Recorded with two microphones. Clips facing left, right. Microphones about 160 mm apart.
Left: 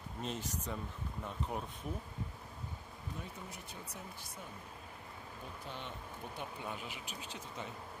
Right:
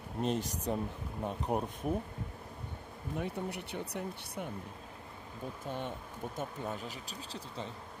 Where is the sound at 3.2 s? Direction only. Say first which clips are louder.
Right 10 dB; 70° right (ahead or behind).